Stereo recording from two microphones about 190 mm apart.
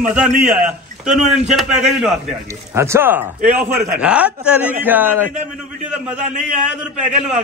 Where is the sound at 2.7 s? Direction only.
15° right (ahead or behind).